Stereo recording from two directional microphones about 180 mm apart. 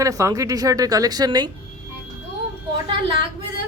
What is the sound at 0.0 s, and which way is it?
Speech, 15° right (ahead or behind).